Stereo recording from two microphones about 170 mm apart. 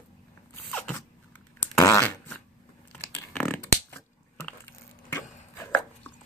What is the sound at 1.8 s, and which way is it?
Fart, 15° left (ahead or behind).